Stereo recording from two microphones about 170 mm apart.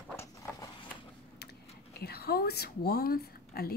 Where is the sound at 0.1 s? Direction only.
15° left (ahead or behind).